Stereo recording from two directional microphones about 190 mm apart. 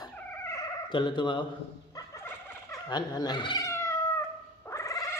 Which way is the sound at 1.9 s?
15° left (ahead or behind).